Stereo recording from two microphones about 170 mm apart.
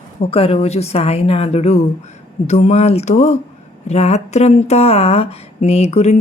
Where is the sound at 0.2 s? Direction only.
35° left (ahead or behind).